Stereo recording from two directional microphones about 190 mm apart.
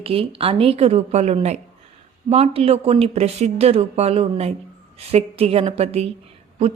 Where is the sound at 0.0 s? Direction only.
30° right (ahead or behind).